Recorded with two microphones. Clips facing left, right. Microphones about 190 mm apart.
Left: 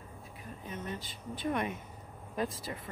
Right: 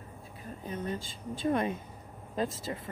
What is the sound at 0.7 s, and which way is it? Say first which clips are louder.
Speech: right 5 dB; 35° right (ahead or behind).